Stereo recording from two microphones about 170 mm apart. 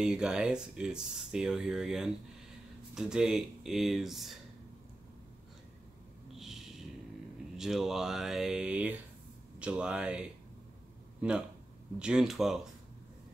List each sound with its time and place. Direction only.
0.0 s speech: 5° right (ahead or behind)
6.3 s a sound: centre (ahead or behind)
7.5 s speech: centre (ahead or behind)